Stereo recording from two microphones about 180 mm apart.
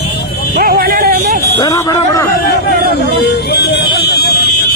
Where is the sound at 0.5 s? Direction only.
55° right (ahead or behind).